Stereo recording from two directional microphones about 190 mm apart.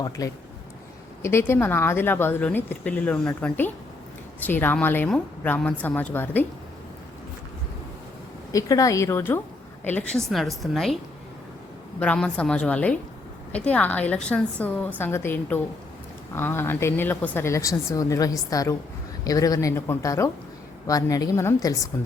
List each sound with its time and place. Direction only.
0.2 s a woman's voice: 20° left (ahead or behind)
8.5 s a woman's voice: 20° left (ahead or behind); by 10.9 s centre (ahead or behind)
11.9 s a woman's voice: 5° left (ahead or behind)